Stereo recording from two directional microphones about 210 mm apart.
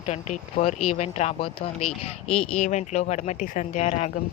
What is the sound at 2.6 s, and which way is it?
Speech, 35° left (ahead or behind).